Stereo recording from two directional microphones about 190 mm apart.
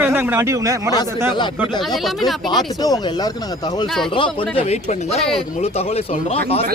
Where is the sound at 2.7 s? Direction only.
20° left (ahead or behind).